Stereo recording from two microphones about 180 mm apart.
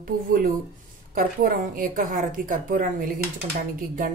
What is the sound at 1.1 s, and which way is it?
A woman's voice, 50° right (ahead or behind).